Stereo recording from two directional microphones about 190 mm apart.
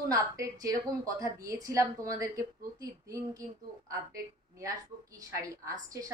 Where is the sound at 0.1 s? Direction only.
20° right (ahead or behind).